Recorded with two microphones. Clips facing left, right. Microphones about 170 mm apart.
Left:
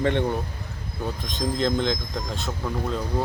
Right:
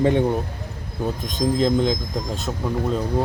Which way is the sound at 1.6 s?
10° right (ahead or behind).